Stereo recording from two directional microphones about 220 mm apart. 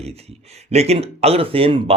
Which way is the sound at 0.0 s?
30° right (ahead or behind).